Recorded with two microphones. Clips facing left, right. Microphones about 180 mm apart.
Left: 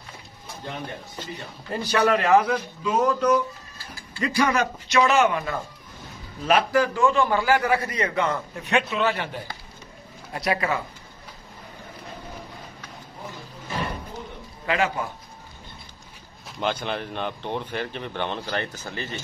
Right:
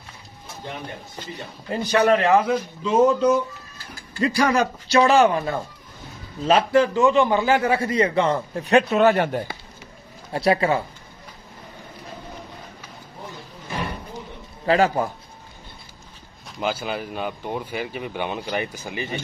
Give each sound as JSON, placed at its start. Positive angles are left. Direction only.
{"t": 1.8, "sound": "a man's voice", "side_deg": -25}
{"t": 8.9, "sound": "speech", "side_deg": -45}
{"t": 10.3, "sound": "a man's voice", "side_deg": -30}
{"t": 14.7, "sound": "a man's voice", "side_deg": -35}
{"t": 16.4, "sound": "speech", "side_deg": -5}